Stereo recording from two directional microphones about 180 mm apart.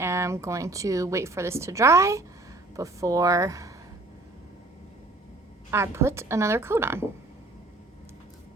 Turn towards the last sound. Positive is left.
turn(degrees=-15)  # may be behind; listen again after turning